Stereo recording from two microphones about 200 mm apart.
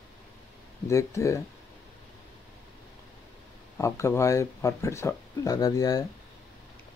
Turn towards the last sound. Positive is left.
turn(degrees=20)  # may be behind; listen again after turning